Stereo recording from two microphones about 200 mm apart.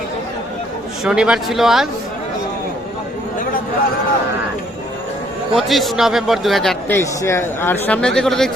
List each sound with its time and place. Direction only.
1.0 s a man's voice: 5° right (ahead or behind)
5.5 s a man's voice: centre (ahead or behind)